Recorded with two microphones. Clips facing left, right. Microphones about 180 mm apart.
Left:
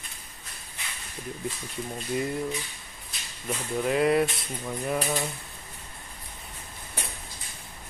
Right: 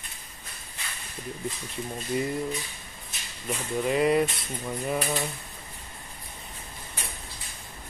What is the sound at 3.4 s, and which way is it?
Speech, centre (ahead or behind).